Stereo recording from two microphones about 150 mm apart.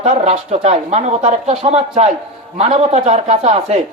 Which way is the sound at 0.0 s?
45° right (ahead or behind).